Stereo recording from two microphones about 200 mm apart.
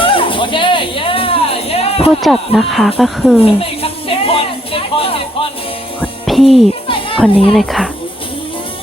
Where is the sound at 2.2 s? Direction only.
Centre (ahead or behind).